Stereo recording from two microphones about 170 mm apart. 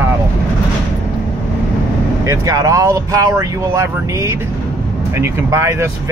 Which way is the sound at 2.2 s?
20° right (ahead or behind).